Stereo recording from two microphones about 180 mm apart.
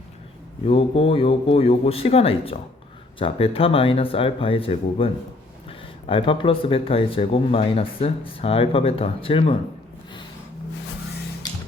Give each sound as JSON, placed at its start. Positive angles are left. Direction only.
{"t": 0.7, "sound": "speech", "side_deg": 30}